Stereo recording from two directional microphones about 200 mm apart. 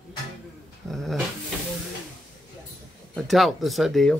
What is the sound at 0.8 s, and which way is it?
Dog, centre (ahead or behind).